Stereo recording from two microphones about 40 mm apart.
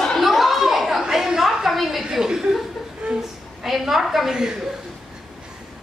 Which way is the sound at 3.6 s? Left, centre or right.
Centre.